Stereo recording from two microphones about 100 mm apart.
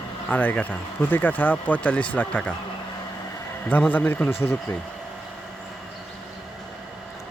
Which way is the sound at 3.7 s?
20° left (ahead or behind).